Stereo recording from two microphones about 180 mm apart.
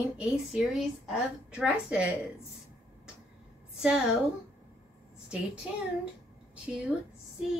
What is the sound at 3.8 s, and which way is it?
Speech, 5° right (ahead or behind).